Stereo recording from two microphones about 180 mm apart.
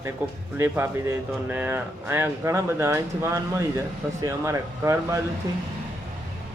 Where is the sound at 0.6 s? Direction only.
15° right (ahead or behind).